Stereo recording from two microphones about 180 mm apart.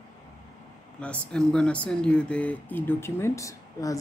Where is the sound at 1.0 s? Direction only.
5° left (ahead or behind).